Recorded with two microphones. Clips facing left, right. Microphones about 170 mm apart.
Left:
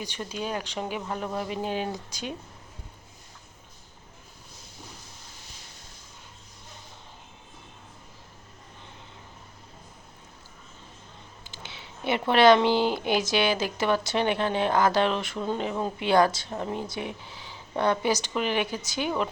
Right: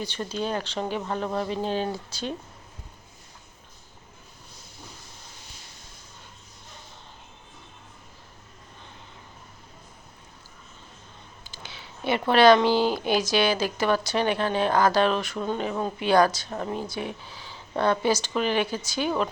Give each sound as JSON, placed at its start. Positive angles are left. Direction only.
{"t": 0.0, "sound": "speech", "side_deg": 10}
{"t": 11.4, "sound": "a sound", "side_deg": 20}
{"t": 12.3, "sound": "speech", "side_deg": 20}